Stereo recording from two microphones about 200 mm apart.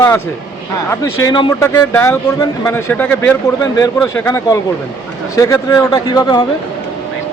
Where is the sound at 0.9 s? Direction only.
20° left (ahead or behind).